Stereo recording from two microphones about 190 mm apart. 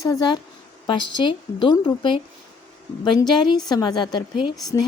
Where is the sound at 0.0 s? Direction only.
20° left (ahead or behind).